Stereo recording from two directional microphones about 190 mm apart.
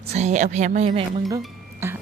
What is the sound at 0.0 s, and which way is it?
Speech, 35° right (ahead or behind).